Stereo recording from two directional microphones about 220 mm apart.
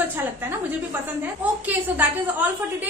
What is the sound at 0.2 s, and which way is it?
A woman's voice, 10° right (ahead or behind).